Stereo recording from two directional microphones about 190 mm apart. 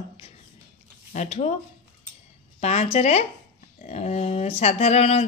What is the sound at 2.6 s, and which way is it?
Speech, 35° left (ahead or behind).